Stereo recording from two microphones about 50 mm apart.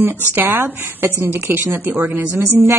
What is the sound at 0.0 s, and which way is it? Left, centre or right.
Speech, right.